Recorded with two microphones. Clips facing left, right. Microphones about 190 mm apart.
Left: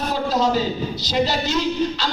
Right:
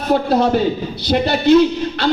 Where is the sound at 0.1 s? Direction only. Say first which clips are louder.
Right 7 dB; 60° right (ahead or behind).